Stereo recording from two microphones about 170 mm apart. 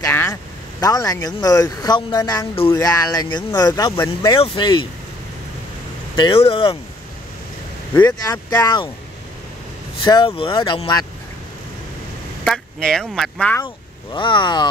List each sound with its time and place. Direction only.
0.0 s speech: 15° left (ahead or behind)
6.1 s speech: 30° left (ahead or behind)
8.0 s speech: 25° left (ahead or behind)
10.0 s speech: 25° left (ahead or behind)
12.4 s speech: 5° left (ahead or behind)
14.1 s speech: 30° left (ahead or behind)